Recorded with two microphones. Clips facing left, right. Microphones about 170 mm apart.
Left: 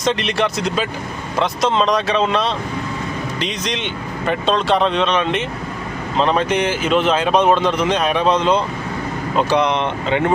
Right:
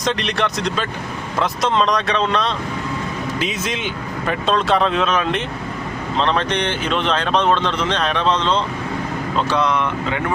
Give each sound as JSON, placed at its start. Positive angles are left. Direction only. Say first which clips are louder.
{"t": 0.0, "sound": "speech", "louder": "left 2 dB", "side_deg": 0}